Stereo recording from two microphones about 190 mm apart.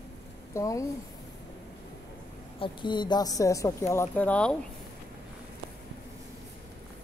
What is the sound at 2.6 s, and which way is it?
Speech, 25° left (ahead or behind).